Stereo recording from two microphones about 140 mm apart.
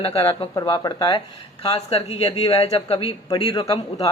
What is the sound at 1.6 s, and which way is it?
Speech, 45° left (ahead or behind).